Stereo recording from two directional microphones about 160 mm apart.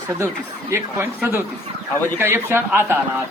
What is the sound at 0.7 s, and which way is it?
A man's voice, 15° right (ahead or behind).